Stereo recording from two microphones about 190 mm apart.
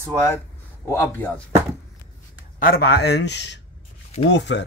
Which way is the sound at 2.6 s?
50° left (ahead or behind).